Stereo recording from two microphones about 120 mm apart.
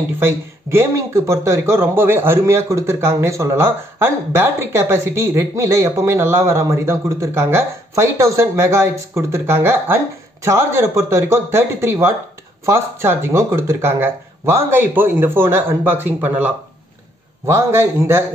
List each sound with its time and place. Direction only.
0.2 s speech: 20° right (ahead or behind)